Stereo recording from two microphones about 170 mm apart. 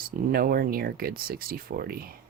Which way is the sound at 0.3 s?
60° right (ahead or behind).